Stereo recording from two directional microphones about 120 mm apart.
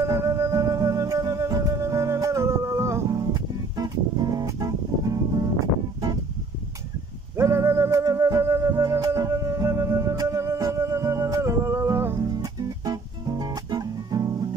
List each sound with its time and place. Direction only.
0.0 s music: 25° right (ahead or behind)
7.3 s music: 20° right (ahead or behind)